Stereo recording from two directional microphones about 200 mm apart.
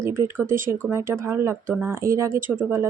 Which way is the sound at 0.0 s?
10° right (ahead or behind).